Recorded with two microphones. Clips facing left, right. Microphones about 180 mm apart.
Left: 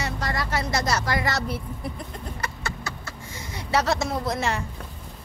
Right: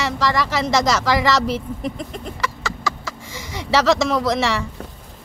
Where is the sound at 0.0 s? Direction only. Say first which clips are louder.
Right 8 dB; 90° right.